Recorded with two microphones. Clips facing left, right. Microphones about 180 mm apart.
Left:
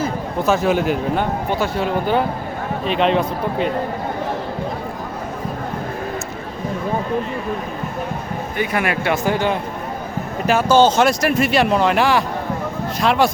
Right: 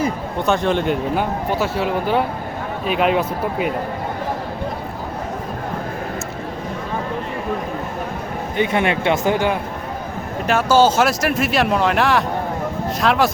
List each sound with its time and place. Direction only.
0.4 s speech: 5° left (ahead or behind)
1.1 s speech: 5° right (ahead or behind)
8.5 s speech: 25° right (ahead or behind)
10.4 s speech: centre (ahead or behind)